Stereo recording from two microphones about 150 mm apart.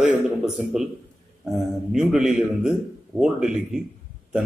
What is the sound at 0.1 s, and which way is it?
A man's voice, 5° right (ahead or behind).